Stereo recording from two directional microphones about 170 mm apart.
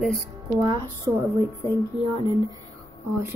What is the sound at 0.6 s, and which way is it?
Speech, 20° right (ahead or behind).